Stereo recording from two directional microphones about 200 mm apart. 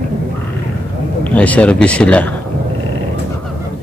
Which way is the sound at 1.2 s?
5° left (ahead or behind).